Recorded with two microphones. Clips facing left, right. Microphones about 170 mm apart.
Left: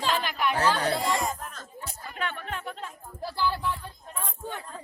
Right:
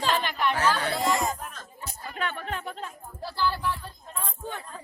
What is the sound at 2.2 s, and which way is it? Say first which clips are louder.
Music: right 2 dB; 40° right (ahead or behind).